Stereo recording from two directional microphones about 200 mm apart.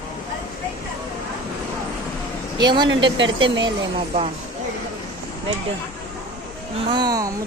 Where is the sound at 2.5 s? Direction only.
20° right (ahead or behind).